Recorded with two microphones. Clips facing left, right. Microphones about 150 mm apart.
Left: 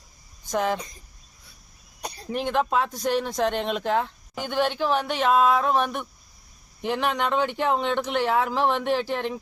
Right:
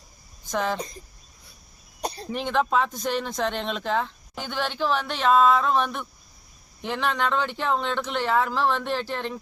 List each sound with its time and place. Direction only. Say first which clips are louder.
0.4 s speech: left 2 dB; 10° left (ahead or behind)
2.0 s throat clearing: right 5 dB; 30° right (ahead or behind)
2.3 s speech: even; 10° left (ahead or behind)